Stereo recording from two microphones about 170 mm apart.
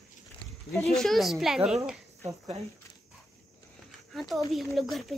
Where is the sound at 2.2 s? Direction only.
40° right (ahead or behind).